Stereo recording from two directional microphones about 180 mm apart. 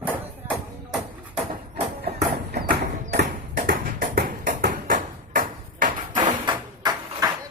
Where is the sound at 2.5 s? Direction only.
60° right (ahead or behind).